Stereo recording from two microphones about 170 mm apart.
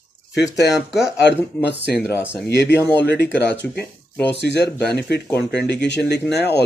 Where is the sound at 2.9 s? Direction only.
90° left.